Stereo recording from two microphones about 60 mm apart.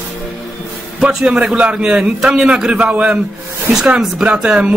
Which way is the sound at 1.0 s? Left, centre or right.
Centre.